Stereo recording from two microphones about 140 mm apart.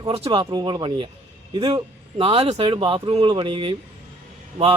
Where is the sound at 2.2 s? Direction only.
45° right (ahead or behind).